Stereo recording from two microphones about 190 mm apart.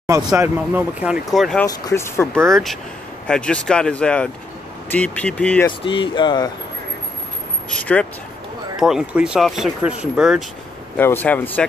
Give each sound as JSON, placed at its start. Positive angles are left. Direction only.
{"t": 0.0, "sound": "speech", "side_deg": -15}
{"t": 0.6, "sound": "speech", "side_deg": -5}
{"t": 1.7, "sound": "speech", "side_deg": 15}
{"t": 2.4, "sound": "speech", "side_deg": 0}
{"t": 5.7, "sound": "speech", "side_deg": 25}
{"t": 7.7, "sound": "speech", "side_deg": 5}
{"t": 11.0, "sound": "speech", "side_deg": 10}